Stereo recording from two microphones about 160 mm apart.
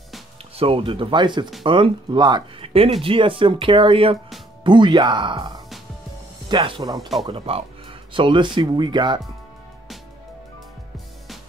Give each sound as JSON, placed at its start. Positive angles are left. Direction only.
{"t": 0.6, "sound": "speech", "side_deg": -35}
{"t": 7.0, "sound": "speech", "side_deg": 0}
{"t": 7.2, "sound": "speech", "side_deg": -35}